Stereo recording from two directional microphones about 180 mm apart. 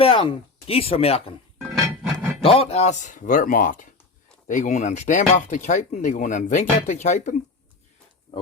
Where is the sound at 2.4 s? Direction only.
30° left (ahead or behind).